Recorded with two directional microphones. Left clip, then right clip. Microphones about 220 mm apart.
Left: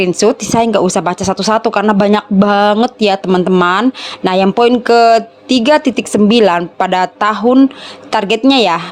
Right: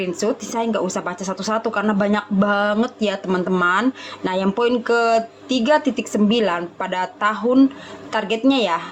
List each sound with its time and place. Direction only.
0.0 s speech: 45° left (ahead or behind)